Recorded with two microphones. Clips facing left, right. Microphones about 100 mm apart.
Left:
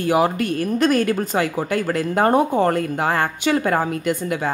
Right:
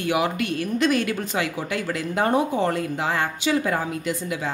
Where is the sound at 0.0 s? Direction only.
40° left (ahead or behind).